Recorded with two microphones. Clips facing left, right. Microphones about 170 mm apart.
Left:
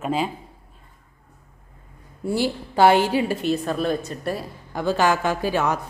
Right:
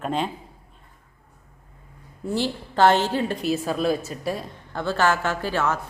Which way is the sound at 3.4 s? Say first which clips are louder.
Left 1 dB; centre (ahead or behind).